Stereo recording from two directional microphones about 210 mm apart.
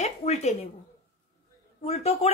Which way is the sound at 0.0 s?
30° left (ahead or behind).